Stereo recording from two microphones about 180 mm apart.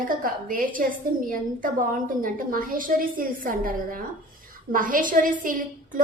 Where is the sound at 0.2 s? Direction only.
50° right (ahead or behind).